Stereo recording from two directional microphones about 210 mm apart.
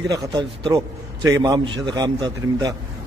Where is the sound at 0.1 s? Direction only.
20° right (ahead or behind).